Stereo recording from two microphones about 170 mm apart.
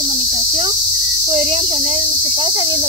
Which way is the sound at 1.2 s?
40° right (ahead or behind).